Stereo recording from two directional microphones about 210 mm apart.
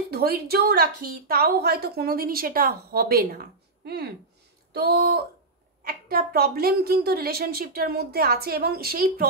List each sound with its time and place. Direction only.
0.1 s a woman's voice: 50° right (ahead or behind)